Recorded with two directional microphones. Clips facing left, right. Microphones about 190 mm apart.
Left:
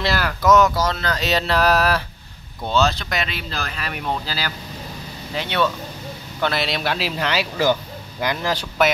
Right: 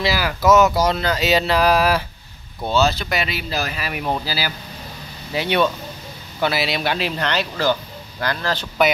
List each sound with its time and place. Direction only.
0.0 s a man's voice: 5° right (ahead or behind); by 8.6 s 15° left (ahead or behind)